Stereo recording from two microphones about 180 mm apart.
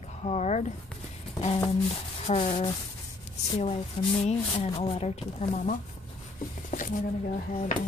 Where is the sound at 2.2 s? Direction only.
35° left (ahead or behind).